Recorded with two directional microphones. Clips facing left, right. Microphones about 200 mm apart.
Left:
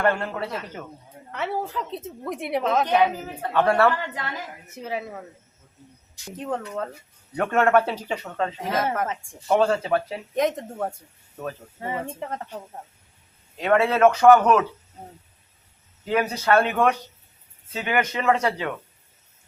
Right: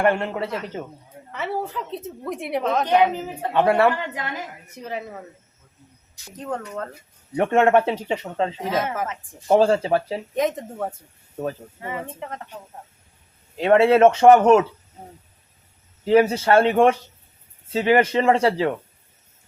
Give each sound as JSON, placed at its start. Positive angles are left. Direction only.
{"t": 0.0, "sound": "speech", "side_deg": -20}
{"t": 1.3, "sound": "a woman's voice", "side_deg": 0}
{"t": 3.5, "sound": "a woman's voice", "side_deg": -20}
{"t": 4.8, "sound": "a woman's voice", "side_deg": 5}
{"t": 6.4, "sound": "a woman's voice", "side_deg": 5}
{"t": 7.3, "sound": "speech", "side_deg": -25}
{"t": 8.6, "sound": "a woman's voice", "side_deg": 0}
{"t": 9.5, "sound": "speech", "side_deg": -30}
{"t": 10.3, "sound": "a woman's voice", "side_deg": 0}
{"t": 13.6, "sound": "speech", "side_deg": -30}
{"t": 16.0, "sound": "speech", "side_deg": -30}